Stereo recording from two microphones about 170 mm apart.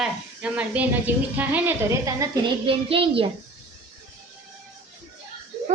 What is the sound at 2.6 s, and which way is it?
Speech, 30° right (ahead or behind).